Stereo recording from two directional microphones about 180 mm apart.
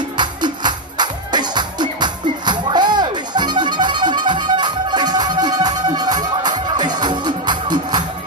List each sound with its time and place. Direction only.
0.2 s music: 25° right (ahead or behind)